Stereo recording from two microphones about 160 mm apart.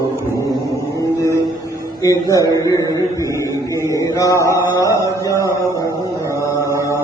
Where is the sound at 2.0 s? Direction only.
20° left (ahead or behind).